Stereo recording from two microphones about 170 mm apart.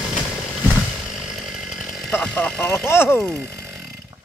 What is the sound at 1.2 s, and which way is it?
Chainsaw, centre (ahead or behind).